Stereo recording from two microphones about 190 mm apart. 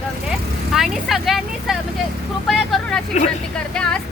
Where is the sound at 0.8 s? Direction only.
Centre (ahead or behind).